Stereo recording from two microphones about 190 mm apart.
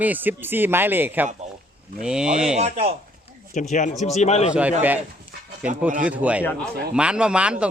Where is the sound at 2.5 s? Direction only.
35° right (ahead or behind).